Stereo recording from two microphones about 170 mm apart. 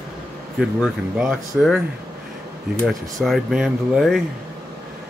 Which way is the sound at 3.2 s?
Centre (ahead or behind).